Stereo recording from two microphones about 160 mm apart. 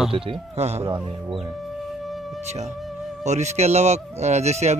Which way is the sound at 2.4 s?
45° right (ahead or behind).